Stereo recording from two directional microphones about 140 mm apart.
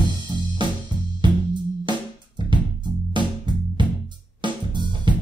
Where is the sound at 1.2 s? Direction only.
35° right (ahead or behind).